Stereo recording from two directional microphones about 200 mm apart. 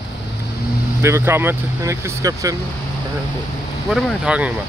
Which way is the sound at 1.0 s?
15° right (ahead or behind).